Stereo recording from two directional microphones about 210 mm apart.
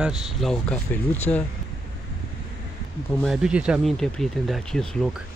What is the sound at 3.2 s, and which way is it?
Speech, centre (ahead or behind).